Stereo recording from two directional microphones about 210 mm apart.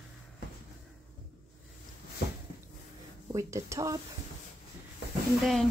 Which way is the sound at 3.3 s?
15° right (ahead or behind).